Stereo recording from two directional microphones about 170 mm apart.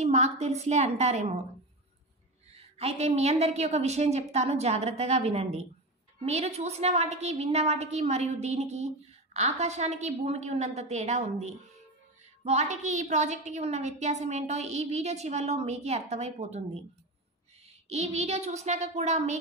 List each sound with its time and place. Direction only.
0.0 s a woman's voice: 40° right (ahead or behind)
2.5 s a woman's voice: 35° right (ahead or behind)
17.8 s a woman's voice: 40° right (ahead or behind)